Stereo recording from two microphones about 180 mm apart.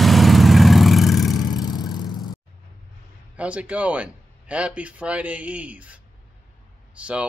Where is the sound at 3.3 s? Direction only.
5° right (ahead or behind).